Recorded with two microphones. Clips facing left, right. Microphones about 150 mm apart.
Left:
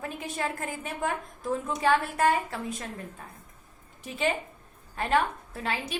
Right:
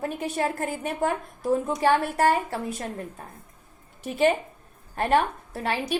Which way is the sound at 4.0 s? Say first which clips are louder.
Right 7 dB; 40° right (ahead or behind).